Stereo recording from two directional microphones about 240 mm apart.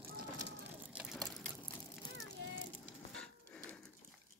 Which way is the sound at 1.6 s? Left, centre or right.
Centre.